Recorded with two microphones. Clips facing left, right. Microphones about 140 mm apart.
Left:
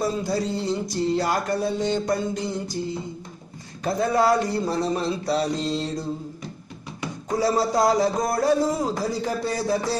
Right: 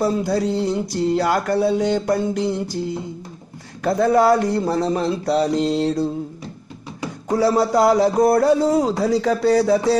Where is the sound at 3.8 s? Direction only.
60° right (ahead or behind).